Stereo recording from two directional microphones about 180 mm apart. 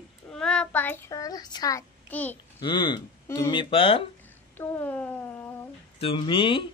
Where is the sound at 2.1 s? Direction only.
10° left (ahead or behind).